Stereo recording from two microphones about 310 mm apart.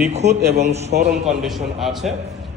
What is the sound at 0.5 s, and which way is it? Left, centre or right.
Speech, right.